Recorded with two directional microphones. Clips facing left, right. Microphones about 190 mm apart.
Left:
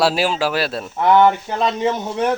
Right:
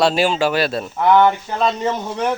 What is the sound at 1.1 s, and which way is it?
Speech, 15° left (ahead or behind).